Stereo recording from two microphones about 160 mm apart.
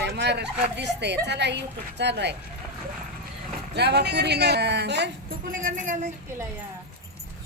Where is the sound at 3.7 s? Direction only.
90° right.